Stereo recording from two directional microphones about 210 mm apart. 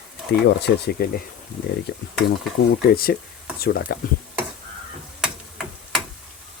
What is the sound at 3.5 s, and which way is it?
Speech, 45° left (ahead or behind).